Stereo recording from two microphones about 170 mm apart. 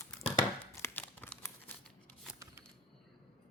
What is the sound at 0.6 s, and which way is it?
Tearing, 10° left (ahead or behind).